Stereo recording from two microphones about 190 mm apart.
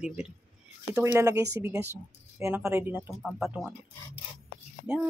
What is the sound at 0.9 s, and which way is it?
Speech, 15° right (ahead or behind).